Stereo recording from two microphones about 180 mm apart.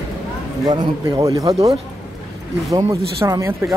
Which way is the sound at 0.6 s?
20° right (ahead or behind).